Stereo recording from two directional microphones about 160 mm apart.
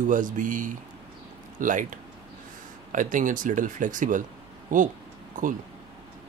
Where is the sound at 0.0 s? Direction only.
55° right (ahead or behind).